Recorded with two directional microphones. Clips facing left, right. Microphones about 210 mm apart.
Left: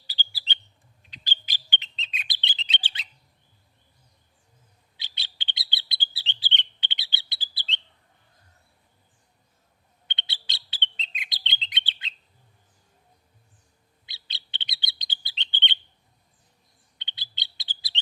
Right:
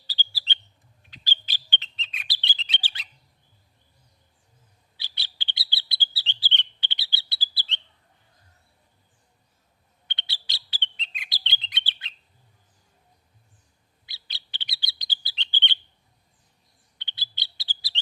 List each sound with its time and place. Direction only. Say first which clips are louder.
0.1 s bird: even; 15° left (ahead or behind)
1.1 s chirp: even; 20° left (ahead or behind)
4.9 s chirp: even; 20° left (ahead or behind)
10.1 s chirp: left 1 dB; 20° left (ahead or behind)
14.1 s bird: left 2 dB; 20° left (ahead or behind)
17.0 s bird: right 1 dB; 20° left (ahead or behind)